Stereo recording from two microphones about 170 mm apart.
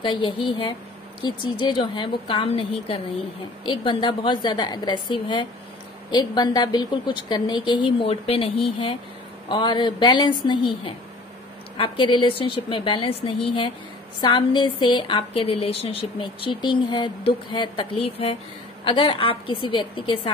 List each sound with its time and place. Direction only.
0.0 s a woman's voice: 30° left (ahead or behind)